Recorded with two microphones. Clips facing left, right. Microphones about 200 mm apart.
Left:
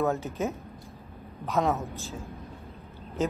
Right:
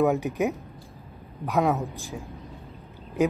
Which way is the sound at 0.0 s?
15° right (ahead or behind).